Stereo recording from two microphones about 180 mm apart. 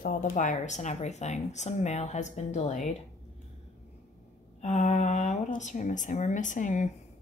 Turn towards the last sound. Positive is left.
turn(degrees=45)  # may be behind; listen again after turning